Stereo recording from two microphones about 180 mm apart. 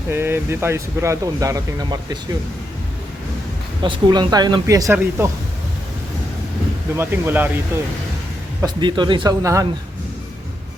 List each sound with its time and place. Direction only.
0.1 s speech: 15° right (ahead or behind)
3.8 s speech: 25° right (ahead or behind)
6.9 s speech: 10° right (ahead or behind)
8.6 s speech: 25° right (ahead or behind)